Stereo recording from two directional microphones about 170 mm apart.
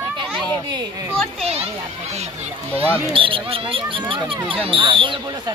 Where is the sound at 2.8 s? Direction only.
35° right (ahead or behind).